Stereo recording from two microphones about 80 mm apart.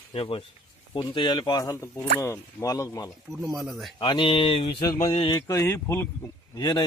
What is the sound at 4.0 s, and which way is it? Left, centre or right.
Speech, left.